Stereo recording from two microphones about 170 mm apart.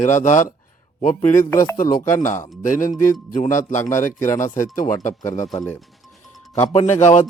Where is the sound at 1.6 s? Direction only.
55° left (ahead or behind).